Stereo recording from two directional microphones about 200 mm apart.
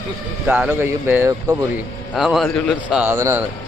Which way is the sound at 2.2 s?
Centre (ahead or behind).